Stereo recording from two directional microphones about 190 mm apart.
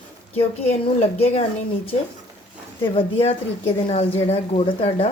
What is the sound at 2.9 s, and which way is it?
A woman's voice, 30° left (ahead or behind).